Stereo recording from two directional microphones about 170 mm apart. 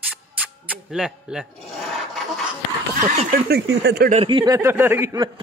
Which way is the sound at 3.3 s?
80° right.